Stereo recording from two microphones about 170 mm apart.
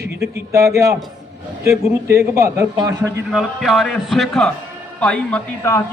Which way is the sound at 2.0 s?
20° right (ahead or behind).